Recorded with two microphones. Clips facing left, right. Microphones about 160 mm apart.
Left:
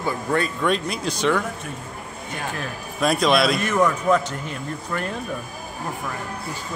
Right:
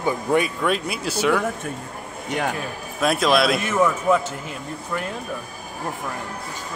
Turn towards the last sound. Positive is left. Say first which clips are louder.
# left 1 dB
turn(degrees=-5)  # may be behind; listen again after turning